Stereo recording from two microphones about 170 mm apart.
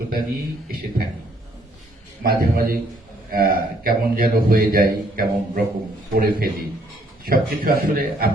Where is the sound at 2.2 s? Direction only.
60° right (ahead or behind).